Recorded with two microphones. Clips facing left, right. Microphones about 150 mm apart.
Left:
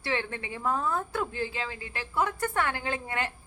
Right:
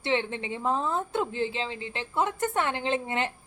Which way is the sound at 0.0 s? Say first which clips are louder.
Right 4 dB; 20° right (ahead or behind).